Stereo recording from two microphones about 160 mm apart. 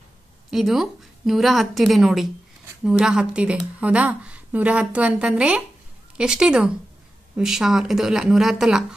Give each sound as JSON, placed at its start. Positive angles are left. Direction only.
{"t": 0.5, "sound": "a woman's voice", "side_deg": 0}